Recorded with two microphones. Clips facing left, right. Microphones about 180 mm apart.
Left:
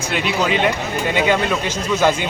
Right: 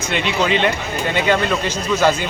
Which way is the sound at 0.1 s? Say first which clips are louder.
Right 1 dB; 5° left (ahead or behind).